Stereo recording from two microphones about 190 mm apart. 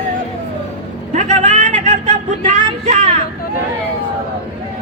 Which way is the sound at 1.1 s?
40° right (ahead or behind).